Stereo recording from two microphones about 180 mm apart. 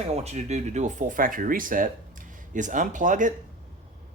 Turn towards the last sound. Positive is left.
turn(degrees=-45)  # may be behind; listen again after turning